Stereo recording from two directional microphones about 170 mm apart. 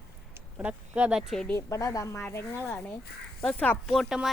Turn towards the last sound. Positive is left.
turn(degrees=0)  # may be behind; listen again after turning